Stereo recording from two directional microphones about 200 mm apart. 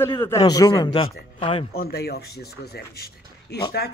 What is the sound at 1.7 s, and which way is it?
Speech, 50° left (ahead or behind).